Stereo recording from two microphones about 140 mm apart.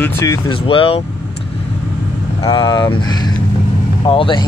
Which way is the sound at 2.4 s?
35° left (ahead or behind).